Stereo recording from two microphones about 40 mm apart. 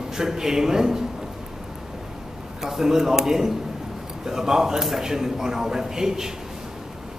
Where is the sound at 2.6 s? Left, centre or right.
Centre.